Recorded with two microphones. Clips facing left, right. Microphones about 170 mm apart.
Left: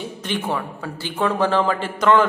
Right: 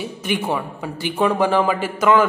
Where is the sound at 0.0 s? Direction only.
10° right (ahead or behind).